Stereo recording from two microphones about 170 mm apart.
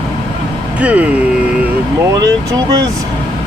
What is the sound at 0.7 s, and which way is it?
Speech, 10° right (ahead or behind).